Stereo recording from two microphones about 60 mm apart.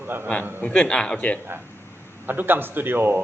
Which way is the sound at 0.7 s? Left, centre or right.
Centre.